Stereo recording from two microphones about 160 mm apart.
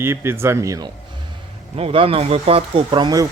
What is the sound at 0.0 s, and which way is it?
Speech, 15° right (ahead or behind).